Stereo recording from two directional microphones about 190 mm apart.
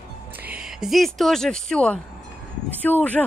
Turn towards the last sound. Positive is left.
turn(degrees=10)  # may be behind; listen again after turning